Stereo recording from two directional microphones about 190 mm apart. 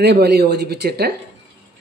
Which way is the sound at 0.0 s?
60° right (ahead or behind).